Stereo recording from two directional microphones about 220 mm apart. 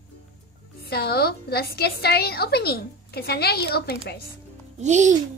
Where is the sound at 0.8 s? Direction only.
45° left (ahead or behind).